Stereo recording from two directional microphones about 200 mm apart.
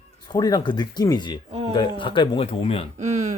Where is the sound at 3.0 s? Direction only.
35° right (ahead or behind).